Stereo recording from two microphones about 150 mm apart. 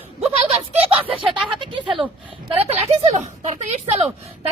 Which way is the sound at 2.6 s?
45° right (ahead or behind).